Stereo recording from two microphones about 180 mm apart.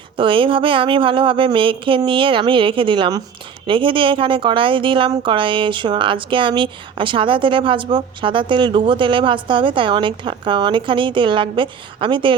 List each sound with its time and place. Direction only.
0.2 s a woman's voice: 30° right (ahead or behind)